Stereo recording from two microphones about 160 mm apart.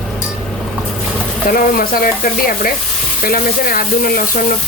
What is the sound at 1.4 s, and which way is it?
Frying, 65° left (ahead or behind).